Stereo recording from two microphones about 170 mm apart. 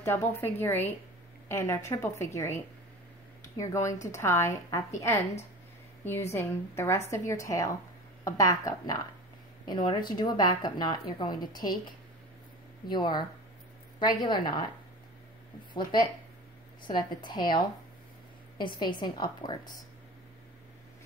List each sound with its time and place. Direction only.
0.0 s a woman's voice: 15° left (ahead or behind)
6.3 s a woman's voice: 15° left (ahead or behind)
12.9 s speech: 25° left (ahead or behind)
15.7 s speech: 25° left (ahead or behind)
18.8 s speech: 25° left (ahead or behind)